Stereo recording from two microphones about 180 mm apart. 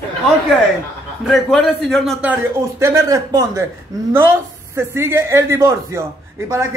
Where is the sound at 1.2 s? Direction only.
Centre (ahead or behind).